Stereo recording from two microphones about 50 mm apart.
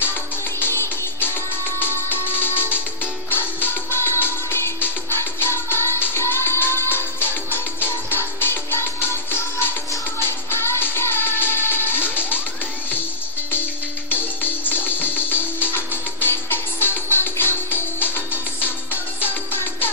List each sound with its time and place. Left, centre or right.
0.6 s music: left
14.0 s music: left